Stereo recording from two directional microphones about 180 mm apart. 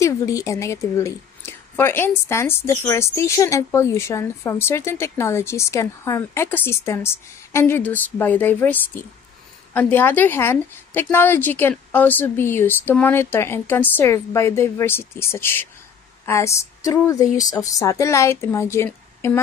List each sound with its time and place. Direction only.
0.0 s a woman's voice: 15° left (ahead or behind)